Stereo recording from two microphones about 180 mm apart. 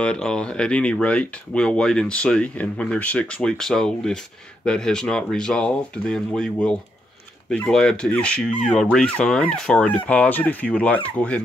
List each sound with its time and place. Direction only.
0.0 s speech: 5° left (ahead or behind)